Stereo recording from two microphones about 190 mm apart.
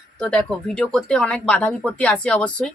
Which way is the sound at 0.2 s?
5° left (ahead or behind).